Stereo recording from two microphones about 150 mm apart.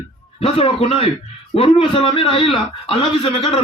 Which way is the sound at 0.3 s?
40° left (ahead or behind).